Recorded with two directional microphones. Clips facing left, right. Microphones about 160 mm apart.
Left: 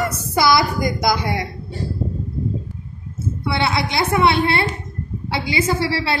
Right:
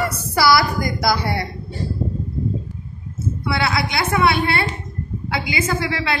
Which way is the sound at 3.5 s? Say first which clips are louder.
Left 1 dB; 25° left (ahead or behind).